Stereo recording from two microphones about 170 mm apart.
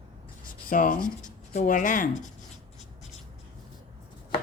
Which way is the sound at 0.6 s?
55° left (ahead or behind).